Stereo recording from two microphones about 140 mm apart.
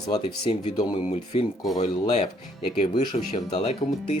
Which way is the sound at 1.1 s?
45° left (ahead or behind).